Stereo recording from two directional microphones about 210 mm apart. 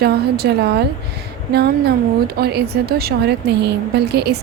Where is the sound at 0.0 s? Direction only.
50° right (ahead or behind).